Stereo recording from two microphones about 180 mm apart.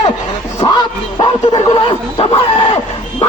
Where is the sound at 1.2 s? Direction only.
30° left (ahead or behind).